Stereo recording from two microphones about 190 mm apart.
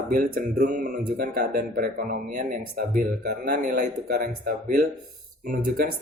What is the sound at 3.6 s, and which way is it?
Speech, 45° right (ahead or behind).